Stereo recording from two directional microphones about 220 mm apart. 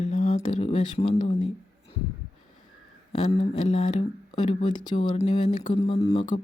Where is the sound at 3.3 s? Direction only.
25° left (ahead or behind).